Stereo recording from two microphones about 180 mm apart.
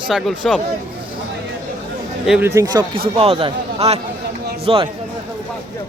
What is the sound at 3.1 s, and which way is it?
Speech, 30° right (ahead or behind).